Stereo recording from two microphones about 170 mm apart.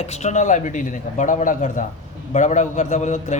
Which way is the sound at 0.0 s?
40° left (ahead or behind).